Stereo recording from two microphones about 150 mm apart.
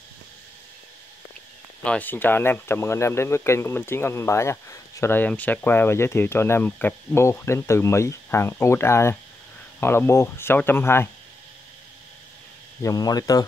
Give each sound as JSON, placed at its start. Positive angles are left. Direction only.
{"t": 1.9, "sound": "speech", "side_deg": 10}
{"t": 12.8, "sound": "speech", "side_deg": 25}